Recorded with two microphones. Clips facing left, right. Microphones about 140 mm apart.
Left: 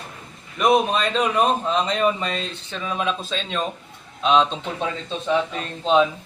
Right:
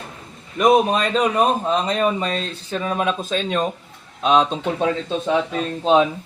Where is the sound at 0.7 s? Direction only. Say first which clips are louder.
Right 2 dB; 45° right (ahead or behind).